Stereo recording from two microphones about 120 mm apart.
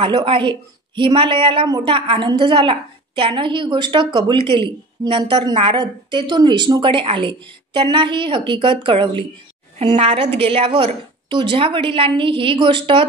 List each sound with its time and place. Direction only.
0.0 s a woman's voice: 45° right (ahead or behind)